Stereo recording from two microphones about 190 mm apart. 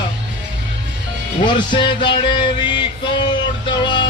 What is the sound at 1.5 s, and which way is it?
Music, 25° left (ahead or behind).